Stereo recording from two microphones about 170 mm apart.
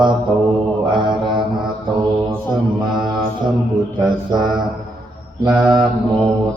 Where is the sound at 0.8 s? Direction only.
25° right (ahead or behind).